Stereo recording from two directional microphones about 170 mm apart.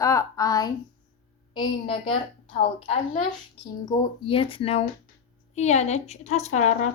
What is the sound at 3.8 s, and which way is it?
A woman's voice, 25° left (ahead or behind).